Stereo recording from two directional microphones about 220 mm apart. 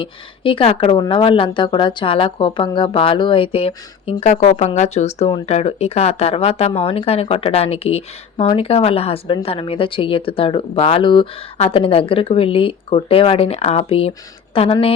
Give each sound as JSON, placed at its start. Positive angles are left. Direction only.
{"t": 0.0, "sound": "a woman's voice", "side_deg": 25}